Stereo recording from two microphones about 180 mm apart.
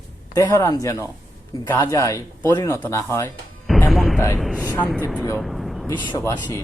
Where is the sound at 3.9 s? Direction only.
Centre (ahead or behind).